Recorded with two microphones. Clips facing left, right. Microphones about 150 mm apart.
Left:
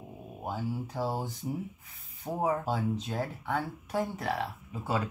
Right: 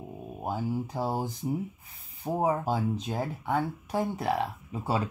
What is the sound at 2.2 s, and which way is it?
Speech, 30° right (ahead or behind).